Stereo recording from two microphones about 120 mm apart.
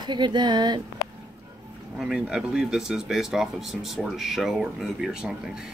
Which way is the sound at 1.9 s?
5° right (ahead or behind).